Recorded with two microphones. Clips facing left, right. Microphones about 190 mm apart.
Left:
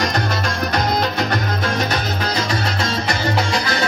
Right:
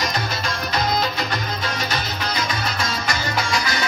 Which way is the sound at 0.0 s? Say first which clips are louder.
Left 5 dB; 60° left (ahead or behind).